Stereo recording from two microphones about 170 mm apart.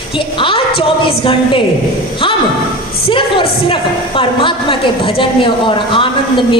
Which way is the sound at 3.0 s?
30° left (ahead or behind).